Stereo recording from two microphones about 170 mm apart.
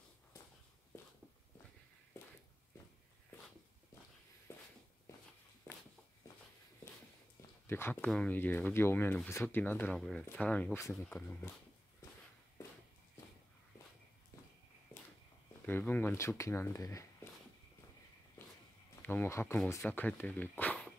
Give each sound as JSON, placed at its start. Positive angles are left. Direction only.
{"t": 7.6, "sound": "speech", "side_deg": 15}
{"t": 15.6, "sound": "speech", "side_deg": 10}
{"t": 19.0, "sound": "speech", "side_deg": 15}